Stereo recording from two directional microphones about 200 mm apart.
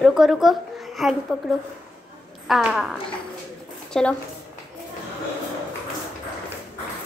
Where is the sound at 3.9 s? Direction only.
5° left (ahead or behind).